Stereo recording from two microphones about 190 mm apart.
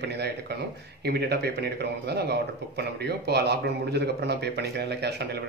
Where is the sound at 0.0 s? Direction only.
60° right (ahead or behind).